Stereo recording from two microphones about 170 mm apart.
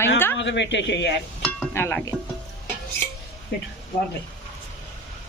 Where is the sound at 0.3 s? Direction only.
90° left.